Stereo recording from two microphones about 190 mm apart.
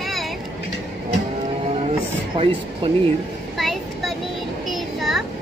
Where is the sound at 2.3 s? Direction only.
30° right (ahead or behind).